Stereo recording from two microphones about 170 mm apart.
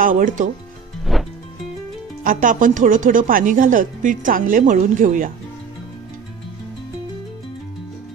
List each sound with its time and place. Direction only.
0.0 s speech: 50° right (ahead or behind)
1.1 s music: centre (ahead or behind)
2.2 s speech: 50° right (ahead or behind)